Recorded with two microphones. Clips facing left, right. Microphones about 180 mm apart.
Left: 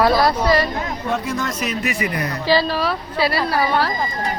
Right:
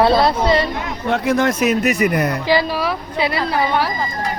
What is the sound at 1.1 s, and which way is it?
Speech, 60° right (ahead or behind).